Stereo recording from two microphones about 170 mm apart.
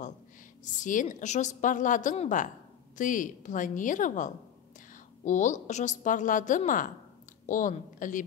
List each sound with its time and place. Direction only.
0.7 s a woman's voice: 50° left (ahead or behind)